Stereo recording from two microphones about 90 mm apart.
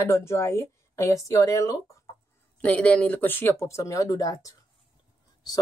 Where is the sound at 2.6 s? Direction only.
15° left (ahead or behind).